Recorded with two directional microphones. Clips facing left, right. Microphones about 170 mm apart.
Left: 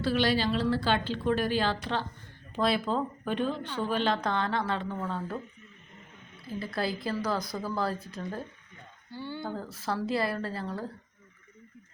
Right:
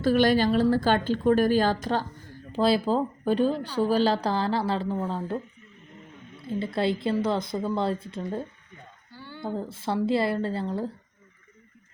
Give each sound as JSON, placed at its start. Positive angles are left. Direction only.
{"t": 0.0, "sound": "a woman's voice", "side_deg": -45}
{"t": 2.5, "sound": "a woman's voice", "side_deg": -30}
{"t": 6.4, "sound": "speech", "side_deg": -25}